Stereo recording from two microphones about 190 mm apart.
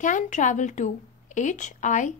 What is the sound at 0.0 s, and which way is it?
A woman's voice, 40° left (ahead or behind).